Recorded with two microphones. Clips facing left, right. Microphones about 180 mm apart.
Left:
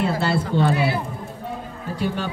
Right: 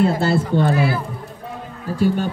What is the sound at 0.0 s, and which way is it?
Speech, 45° right (ahead or behind).